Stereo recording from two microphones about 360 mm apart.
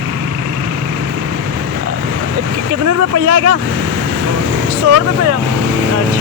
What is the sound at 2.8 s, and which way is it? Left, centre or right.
Speech, right.